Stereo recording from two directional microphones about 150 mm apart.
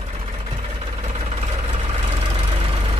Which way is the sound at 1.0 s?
45° right (ahead or behind).